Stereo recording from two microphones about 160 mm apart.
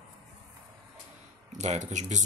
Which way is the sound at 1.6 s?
45° right (ahead or behind).